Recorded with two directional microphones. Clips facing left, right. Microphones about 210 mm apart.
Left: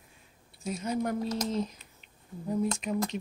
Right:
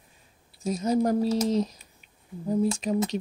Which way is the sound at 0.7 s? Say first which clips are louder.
Right 7 dB; 40° right (ahead or behind).